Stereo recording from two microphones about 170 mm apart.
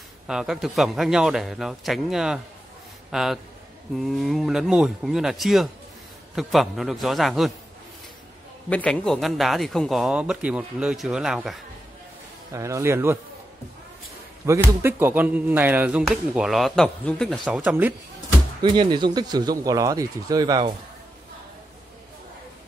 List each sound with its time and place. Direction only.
0.3 s speech: 5° right (ahead or behind)
8.6 s speech: 5° left (ahead or behind)
12.5 s speech: 20° right (ahead or behind)
14.8 s speech: 15° right (ahead or behind); by 17.4 s 5° left (ahead or behind)
17.6 s speech: 10° right (ahead or behind)
18.6 s speech: 25° right (ahead or behind)